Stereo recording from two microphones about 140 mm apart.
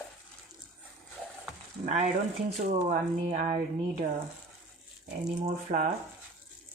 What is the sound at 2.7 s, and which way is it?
Speech, 60° right (ahead or behind).